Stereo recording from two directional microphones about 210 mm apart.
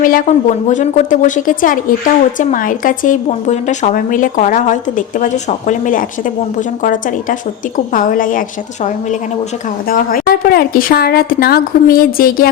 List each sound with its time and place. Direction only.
0.0 s a woman's voice: 40° left (ahead or behind)